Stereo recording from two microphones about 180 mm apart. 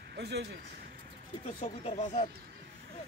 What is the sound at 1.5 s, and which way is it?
Speech, 35° left (ahead or behind).